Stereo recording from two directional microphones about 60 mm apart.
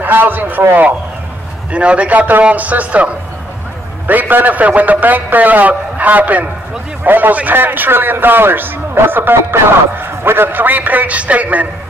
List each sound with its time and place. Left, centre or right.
0.0 s a man's voice: right
1.7 s a man's voice: centre
4.1 s a man's voice: right